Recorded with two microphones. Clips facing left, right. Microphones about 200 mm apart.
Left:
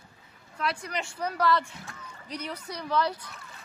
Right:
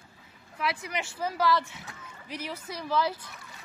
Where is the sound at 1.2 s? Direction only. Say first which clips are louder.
Even; 5° right (ahead or behind).